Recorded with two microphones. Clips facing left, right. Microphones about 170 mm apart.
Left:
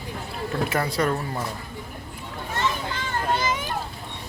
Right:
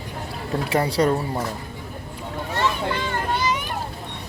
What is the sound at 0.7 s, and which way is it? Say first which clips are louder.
Speech: right 7 dB; 30° right (ahead or behind).